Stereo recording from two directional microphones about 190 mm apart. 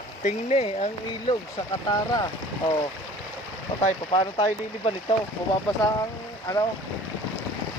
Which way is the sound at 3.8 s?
25° left (ahead or behind).